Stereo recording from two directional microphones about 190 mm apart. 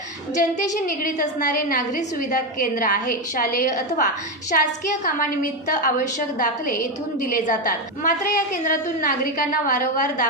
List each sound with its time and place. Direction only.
0.3 s a woman's voice: 40° left (ahead or behind)